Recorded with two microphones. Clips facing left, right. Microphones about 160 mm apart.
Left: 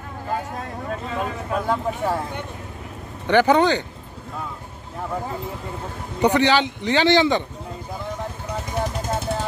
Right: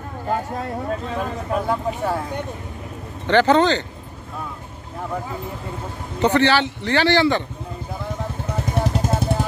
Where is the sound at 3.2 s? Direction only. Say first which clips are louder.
Right 1 dB; 10° left (ahead or behind).